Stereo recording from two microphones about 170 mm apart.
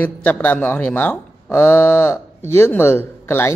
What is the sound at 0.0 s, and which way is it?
Speech, 10° left (ahead or behind).